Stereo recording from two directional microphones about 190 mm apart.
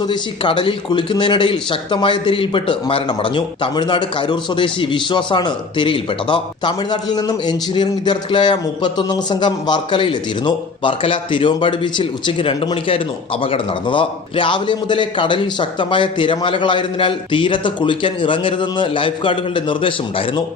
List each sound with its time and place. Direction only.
0.0 s speech: 25° left (ahead or behind)